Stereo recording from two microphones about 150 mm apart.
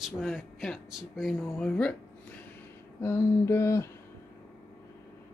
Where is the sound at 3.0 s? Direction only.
15° left (ahead or behind).